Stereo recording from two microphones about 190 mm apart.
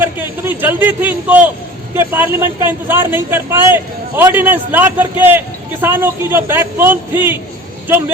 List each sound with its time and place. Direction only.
0.0 s a man's voice: 10° right (ahead or behind)